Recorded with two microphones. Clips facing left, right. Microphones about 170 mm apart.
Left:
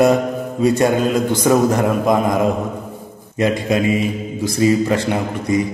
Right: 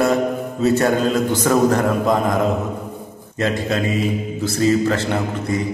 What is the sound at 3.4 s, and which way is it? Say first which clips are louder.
A man's voice: left 3 dB; 15° left (ahead or behind).